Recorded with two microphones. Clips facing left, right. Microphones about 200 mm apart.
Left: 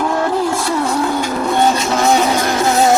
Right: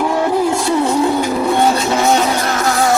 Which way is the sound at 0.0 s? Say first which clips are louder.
Right 2 dB; 10° right (ahead or behind).